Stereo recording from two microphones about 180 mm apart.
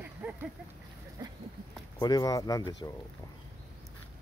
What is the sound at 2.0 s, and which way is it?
Speech, 20° left (ahead or behind).